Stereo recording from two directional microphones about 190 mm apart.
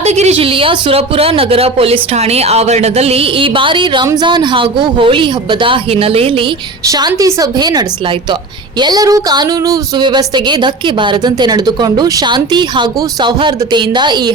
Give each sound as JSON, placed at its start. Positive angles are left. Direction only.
{"t": 0.0, "sound": "speech", "side_deg": -35}
{"t": 6.8, "sound": "speech", "side_deg": -20}